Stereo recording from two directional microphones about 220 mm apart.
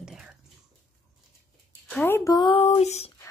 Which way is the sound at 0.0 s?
5° right (ahead or behind).